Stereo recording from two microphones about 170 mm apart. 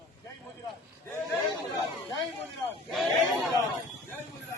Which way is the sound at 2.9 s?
Centre (ahead or behind).